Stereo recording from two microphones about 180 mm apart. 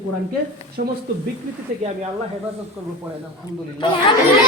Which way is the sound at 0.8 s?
45° right (ahead or behind).